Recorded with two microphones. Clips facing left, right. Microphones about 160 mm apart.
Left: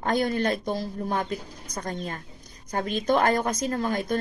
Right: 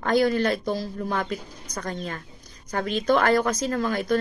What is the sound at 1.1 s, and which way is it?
Speech, 35° left (ahead or behind).